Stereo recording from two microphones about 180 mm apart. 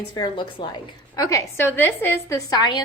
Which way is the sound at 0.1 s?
25° left (ahead or behind).